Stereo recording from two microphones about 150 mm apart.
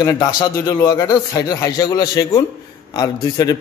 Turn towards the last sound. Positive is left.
turn(degrees=25)  # may be behind; listen again after turning